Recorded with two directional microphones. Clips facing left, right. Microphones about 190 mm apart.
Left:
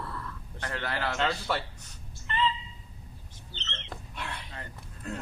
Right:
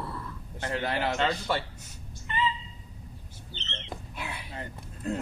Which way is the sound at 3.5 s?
15° right (ahead or behind).